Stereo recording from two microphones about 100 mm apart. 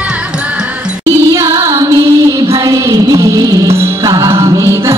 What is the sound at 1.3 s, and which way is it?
Music, 35° right (ahead or behind).